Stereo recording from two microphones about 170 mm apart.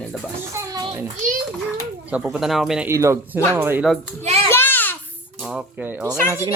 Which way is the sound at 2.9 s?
15° right (ahead or behind).